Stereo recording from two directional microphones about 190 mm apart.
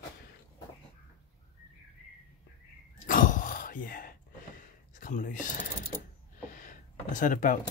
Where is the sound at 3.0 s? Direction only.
45° left (ahead or behind).